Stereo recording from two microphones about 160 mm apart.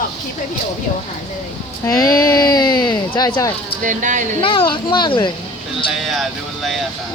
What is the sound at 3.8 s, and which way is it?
Speech, 55° right (ahead or behind).